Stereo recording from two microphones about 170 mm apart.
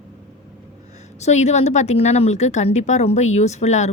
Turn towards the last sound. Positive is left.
turn(degrees=40)  # may be behind; listen again after turning